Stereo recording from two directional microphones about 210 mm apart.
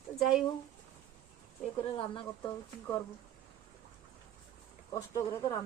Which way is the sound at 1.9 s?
25° left (ahead or behind).